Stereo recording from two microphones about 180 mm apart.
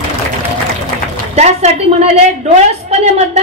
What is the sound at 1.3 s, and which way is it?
A woman's voice, 40° right (ahead or behind).